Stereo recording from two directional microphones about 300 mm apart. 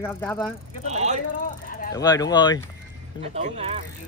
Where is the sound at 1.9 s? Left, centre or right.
Centre.